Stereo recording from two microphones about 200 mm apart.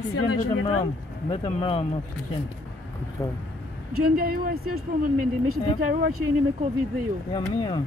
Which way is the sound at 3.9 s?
45° right (ahead or behind).